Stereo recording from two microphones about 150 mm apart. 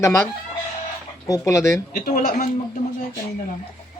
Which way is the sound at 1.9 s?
65° left (ahead or behind).